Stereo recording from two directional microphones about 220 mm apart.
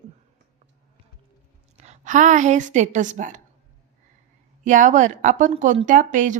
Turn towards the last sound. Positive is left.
turn(degrees=-35)  # may be behind; listen again after turning